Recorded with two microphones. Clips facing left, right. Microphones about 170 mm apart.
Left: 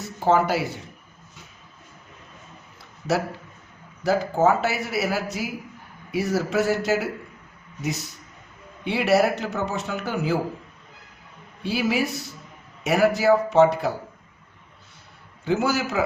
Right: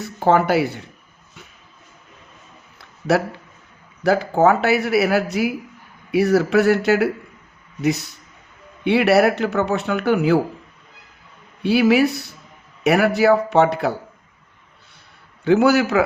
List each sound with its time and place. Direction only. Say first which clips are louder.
0.0 s speech: right 3 dB; 60° right (ahead or behind)
4.0 s a man's voice: right 4 dB; 65° right (ahead or behind)
11.6 s a man's voice: right 9 dB; 65° right (ahead or behind)
15.4 s a man's voice: right 8 dB; 65° right (ahead or behind)